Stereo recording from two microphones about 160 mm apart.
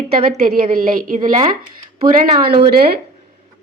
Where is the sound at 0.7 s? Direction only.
60° right (ahead or behind).